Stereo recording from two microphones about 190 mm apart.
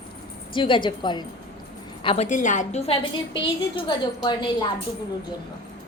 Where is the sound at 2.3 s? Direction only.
40° left (ahead or behind); by 4.6 s 25° left (ahead or behind).